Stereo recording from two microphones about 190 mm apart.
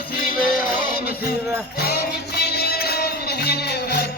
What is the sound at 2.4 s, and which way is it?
Music, 55° left (ahead or behind).